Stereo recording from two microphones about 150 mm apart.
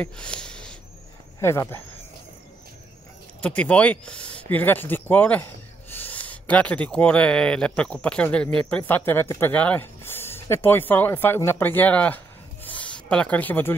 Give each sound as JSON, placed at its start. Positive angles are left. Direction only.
{"t": 0.0, "sound": "a sound", "side_deg": 5}
{"t": 1.4, "sound": "speech", "side_deg": 20}
{"t": 3.3, "sound": "speech", "side_deg": 10}